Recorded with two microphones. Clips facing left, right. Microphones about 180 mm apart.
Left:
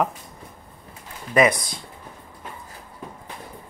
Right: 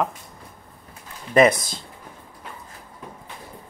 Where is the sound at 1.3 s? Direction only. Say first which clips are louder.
Right 2 dB; 25° right (ahead or behind).